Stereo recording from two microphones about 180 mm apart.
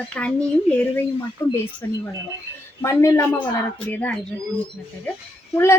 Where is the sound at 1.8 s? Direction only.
15° left (ahead or behind).